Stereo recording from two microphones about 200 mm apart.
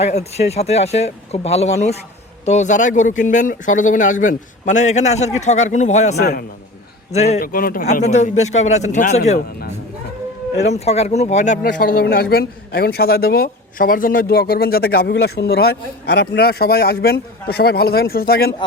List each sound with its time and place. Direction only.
0.0 s speech: 35° left (ahead or behind)
6.1 s speech: 50° left (ahead or behind)
7.1 s speech: 35° left (ahead or behind)
7.3 s speech: 45° left (ahead or behind)
10.7 s speech: 30° left (ahead or behind); by 18.5 s 50° left (ahead or behind)